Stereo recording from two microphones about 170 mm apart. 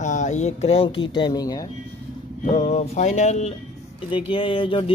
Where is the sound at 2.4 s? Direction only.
40° left (ahead or behind).